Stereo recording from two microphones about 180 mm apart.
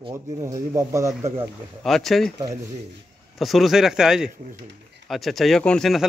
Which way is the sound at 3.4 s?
Centre (ahead or behind).